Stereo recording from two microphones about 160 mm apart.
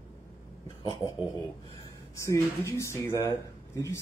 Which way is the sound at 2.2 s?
20° left (ahead or behind).